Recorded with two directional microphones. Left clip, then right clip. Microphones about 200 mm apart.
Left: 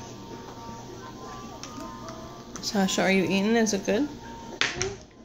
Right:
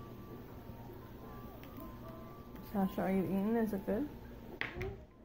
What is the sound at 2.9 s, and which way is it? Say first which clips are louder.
Speech: left 14 dB; 20° left (ahead or behind).